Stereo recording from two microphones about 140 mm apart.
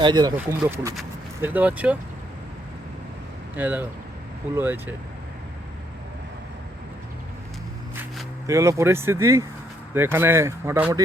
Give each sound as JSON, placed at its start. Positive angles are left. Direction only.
{"t": 0.0, "sound": "speech", "side_deg": -30}
{"t": 0.3, "sound": "speech", "side_deg": -20}
{"t": 3.5, "sound": "speech", "side_deg": -10}
{"t": 8.4, "sound": "speech", "side_deg": -20}